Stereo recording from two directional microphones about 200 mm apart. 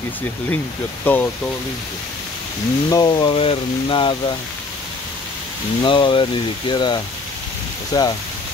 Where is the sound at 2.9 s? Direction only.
20° left (ahead or behind).